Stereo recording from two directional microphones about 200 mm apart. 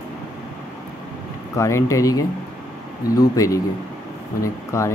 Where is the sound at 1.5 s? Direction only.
15° left (ahead or behind).